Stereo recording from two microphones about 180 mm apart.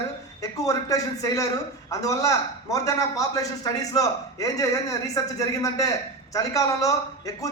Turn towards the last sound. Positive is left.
turn(degrees=20)  # may be behind; listen again after turning